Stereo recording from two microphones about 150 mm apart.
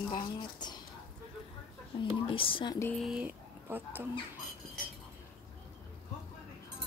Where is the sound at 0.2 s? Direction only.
30° left (ahead or behind).